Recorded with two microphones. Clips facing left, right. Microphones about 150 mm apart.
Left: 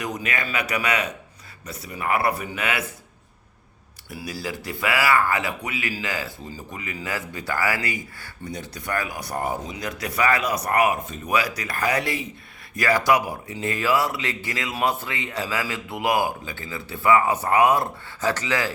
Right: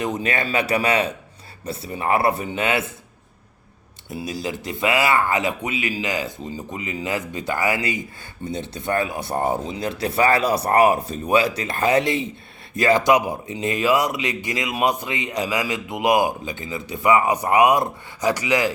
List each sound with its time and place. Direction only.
0.0 s speech: 30° right (ahead or behind)
4.1 s speech: 20° right (ahead or behind)